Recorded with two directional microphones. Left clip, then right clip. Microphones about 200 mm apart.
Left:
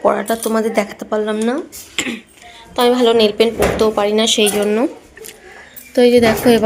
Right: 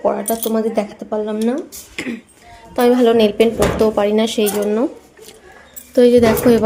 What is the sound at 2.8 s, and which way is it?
Speech, 25° right (ahead or behind).